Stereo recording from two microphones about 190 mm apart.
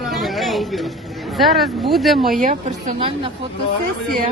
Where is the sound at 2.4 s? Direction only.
40° right (ahead or behind).